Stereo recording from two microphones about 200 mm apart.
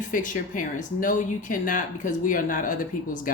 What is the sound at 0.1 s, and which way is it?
A woman's voice, 40° left (ahead or behind).